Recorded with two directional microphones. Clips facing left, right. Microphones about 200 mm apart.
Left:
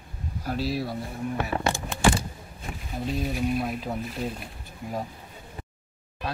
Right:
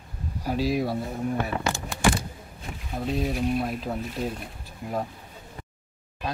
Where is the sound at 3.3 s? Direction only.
Centre (ahead or behind).